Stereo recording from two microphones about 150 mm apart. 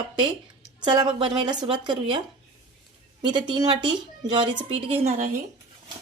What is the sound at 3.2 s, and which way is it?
A woman's voice, 30° right (ahead or behind).